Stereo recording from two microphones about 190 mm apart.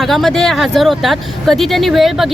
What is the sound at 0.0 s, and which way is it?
Speech, centre (ahead or behind).